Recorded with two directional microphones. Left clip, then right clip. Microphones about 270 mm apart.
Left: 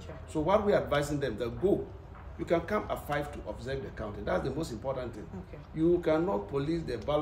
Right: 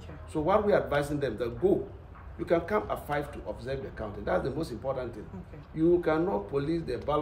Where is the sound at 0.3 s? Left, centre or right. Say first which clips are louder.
Right 1 dB; centre.